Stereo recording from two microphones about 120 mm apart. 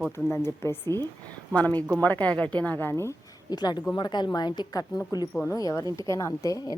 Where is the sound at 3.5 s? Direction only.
35° left (ahead or behind).